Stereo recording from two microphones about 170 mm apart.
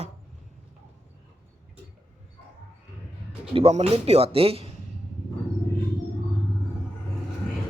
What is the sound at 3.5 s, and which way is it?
Speech, 35° right (ahead or behind).